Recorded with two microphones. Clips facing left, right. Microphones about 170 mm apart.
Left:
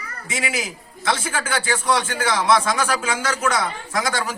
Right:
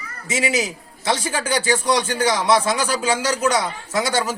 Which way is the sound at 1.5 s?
15° right (ahead or behind).